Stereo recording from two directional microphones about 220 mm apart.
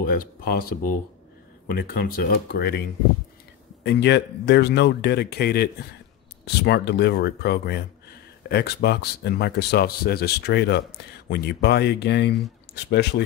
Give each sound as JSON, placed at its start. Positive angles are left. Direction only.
{"t": 0.0, "sound": "speech", "side_deg": 40}
{"t": 3.8, "sound": "speech", "side_deg": 50}